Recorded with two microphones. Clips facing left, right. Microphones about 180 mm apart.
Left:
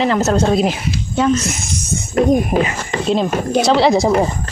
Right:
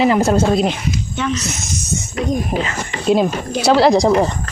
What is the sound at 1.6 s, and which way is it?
Speech, 55° left (ahead or behind).